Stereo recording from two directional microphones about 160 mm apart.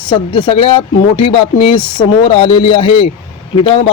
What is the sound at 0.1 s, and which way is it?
Speech, 30° left (ahead or behind).